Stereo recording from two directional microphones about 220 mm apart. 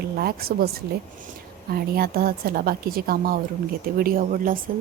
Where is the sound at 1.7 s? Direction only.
45° right (ahead or behind).